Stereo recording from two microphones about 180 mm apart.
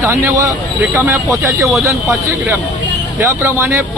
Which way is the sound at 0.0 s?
15° right (ahead or behind).